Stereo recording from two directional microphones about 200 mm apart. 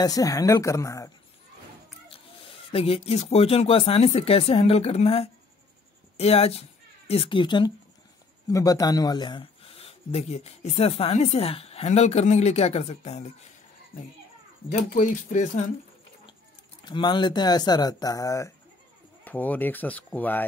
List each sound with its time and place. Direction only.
0.0 s speech: 15° left (ahead or behind)
2.0 s speech: 25° left (ahead or behind)
14.7 s speech: 35° left (ahead or behind)
16.8 s speech: 20° left (ahead or behind)